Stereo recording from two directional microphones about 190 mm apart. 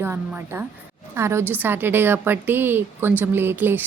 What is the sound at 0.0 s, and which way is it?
A woman's voice, 10° right (ahead or behind).